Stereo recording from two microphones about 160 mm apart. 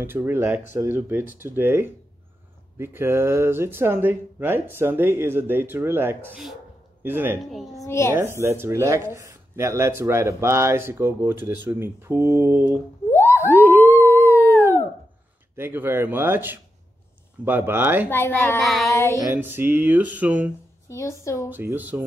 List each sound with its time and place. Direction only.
0.0 s a man's voice: 15° right (ahead or behind)
7.7 s a woman's voice: 20° left (ahead or behind)
8.1 s speech: 15° right (ahead or behind)
13.1 s a sound: 15° left (ahead or behind)
13.6 s a sound: 10° right (ahead or behind)
14.2 s howl: 15° left (ahead or behind)
15.5 s speech: 15° right (ahead or behind)
18.1 s speech: 15° left (ahead or behind)
18.6 s child singing: centre (ahead or behind)
18.9 s speech: 15° left (ahead or behind)
19.3 s speech: 10° right (ahead or behind)
20.9 s a woman's voice: 20° left (ahead or behind)
21.5 s speech: 10° right (ahead or behind)